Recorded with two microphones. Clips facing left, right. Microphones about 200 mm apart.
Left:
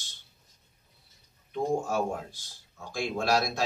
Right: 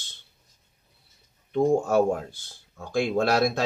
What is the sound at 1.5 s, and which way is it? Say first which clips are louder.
Speech: right 7 dB; 60° right (ahead or behind).